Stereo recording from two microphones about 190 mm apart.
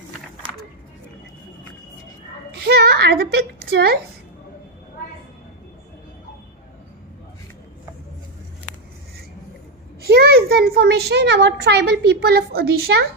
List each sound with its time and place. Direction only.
2.6 s a child's voice: 55° right (ahead or behind)
10.0 s a child's voice: 55° right (ahead or behind)